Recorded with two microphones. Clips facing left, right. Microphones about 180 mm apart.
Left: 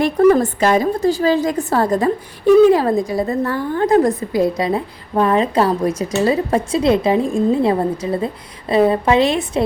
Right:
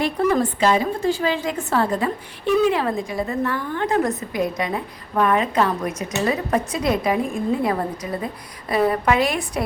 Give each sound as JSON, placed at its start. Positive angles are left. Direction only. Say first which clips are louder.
{"t": 0.0, "sound": "a woman's voice", "louder": "left 7 dB", "side_deg": 45}